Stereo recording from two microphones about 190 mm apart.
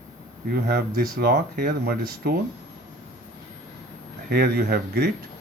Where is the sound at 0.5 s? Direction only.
55° right (ahead or behind).